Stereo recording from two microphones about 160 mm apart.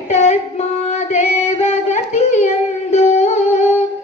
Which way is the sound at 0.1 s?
45° left (ahead or behind).